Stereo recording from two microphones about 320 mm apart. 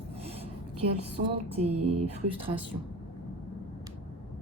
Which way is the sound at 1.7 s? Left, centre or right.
Right.